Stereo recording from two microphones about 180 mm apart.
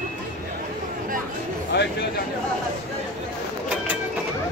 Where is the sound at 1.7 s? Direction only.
70° left (ahead or behind).